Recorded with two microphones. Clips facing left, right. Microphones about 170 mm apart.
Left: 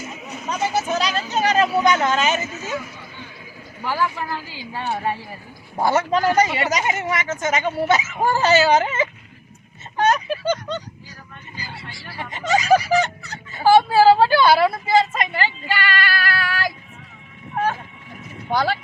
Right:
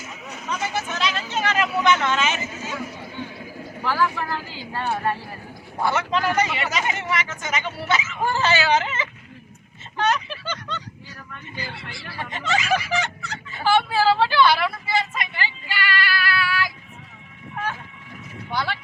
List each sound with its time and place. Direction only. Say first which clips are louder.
0.4 s speech: left 5 dB; 35° left (ahead or behind)
3.8 s speech: even; 15° left (ahead or behind)
5.8 s speech: left 4 dB; 40° left (ahead or behind)
10.0 s a sound: left 4 dB; 45° left (ahead or behind)
11.5 s a woman's voice: right 1 dB; 40° left (ahead or behind)
18.5 s speech: left 6 dB; 40° left (ahead or behind)